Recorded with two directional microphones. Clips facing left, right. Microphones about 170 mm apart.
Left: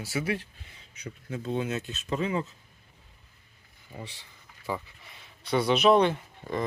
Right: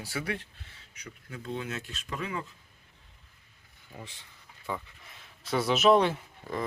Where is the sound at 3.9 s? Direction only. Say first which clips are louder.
Left 3 dB; centre (ahead or behind).